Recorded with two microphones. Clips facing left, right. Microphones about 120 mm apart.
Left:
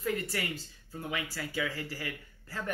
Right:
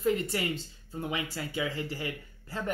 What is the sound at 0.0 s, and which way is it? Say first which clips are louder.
Speech: right 5 dB; 25° right (ahead or behind).